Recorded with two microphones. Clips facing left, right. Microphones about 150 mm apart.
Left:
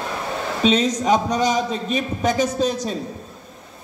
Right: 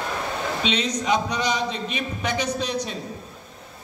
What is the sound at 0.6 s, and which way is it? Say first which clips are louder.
A man's voice: left 8 dB; 45° left (ahead or behind).